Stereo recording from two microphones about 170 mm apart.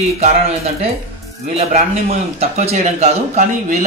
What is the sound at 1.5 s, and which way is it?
A man's voice, 40° right (ahead or behind).